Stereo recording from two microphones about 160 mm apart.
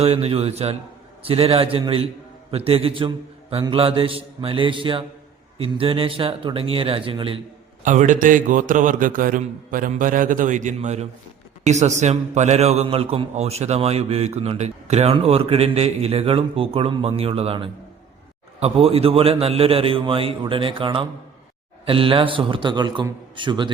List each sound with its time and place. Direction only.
0.0 s a man's voice: 40° right (ahead or behind)
7.9 s a man's voice: 55° right (ahead or behind); by 23.6 s 30° right (ahead or behind)